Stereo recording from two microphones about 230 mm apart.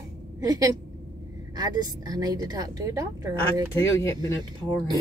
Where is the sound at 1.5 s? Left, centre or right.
Centre.